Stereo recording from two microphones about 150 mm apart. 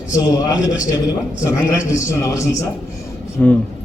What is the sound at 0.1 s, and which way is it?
Speech, 25° left (ahead or behind).